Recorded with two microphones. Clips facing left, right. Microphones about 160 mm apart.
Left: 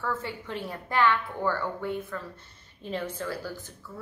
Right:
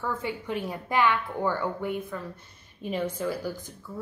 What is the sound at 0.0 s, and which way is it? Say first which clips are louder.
A woman's voice: right 2 dB; 15° right (ahead or behind).